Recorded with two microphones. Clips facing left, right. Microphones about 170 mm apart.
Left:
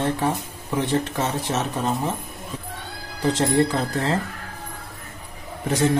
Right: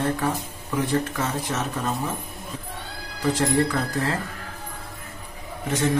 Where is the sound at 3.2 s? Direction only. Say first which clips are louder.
Left 2 dB; 25° left (ahead or behind).